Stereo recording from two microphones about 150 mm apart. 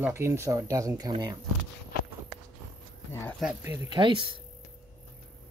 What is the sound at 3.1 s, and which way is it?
Speech, 15° left (ahead or behind).